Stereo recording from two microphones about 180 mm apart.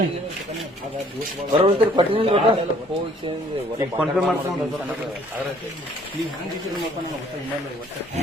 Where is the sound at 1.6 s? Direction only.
30° right (ahead or behind).